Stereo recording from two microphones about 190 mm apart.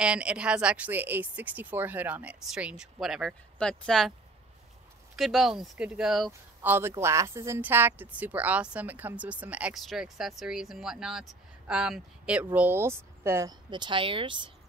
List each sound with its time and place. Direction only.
0.0 s speech: 5° right (ahead or behind)
5.1 s speech: centre (ahead or behind)
6.7 s speech: 15° right (ahead or behind)